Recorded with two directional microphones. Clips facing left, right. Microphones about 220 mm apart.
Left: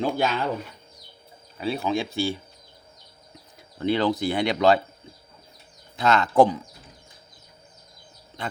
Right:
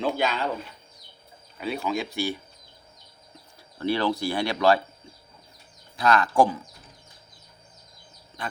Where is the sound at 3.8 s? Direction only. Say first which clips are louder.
Left 2 dB; 20° left (ahead or behind).